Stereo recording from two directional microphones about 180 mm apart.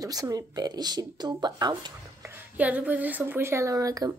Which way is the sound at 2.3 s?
10° right (ahead or behind).